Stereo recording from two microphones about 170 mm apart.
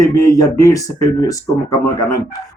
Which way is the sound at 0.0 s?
20° left (ahead or behind).